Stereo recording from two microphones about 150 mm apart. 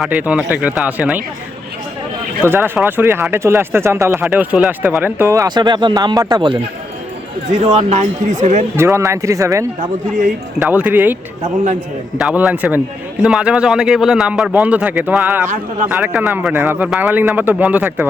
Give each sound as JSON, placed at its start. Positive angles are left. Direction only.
{"t": 0.0, "sound": "speech", "side_deg": -10}
{"t": 2.4, "sound": "speech", "side_deg": -15}
{"t": 7.6, "sound": "speech", "side_deg": -45}
{"t": 8.7, "sound": "speech", "side_deg": -20}
{"t": 10.6, "sound": "speech", "side_deg": -10}